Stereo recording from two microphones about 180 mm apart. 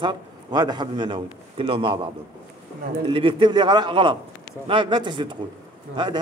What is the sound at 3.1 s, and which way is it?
A man's voice, 30° right (ahead or behind).